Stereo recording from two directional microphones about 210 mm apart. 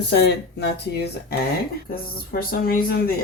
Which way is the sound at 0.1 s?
50° left (ahead or behind).